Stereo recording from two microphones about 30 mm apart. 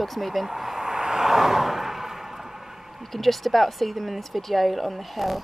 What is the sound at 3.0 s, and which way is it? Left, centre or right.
Speech, centre.